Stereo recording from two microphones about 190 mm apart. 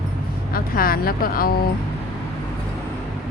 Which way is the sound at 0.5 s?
50° left (ahead or behind).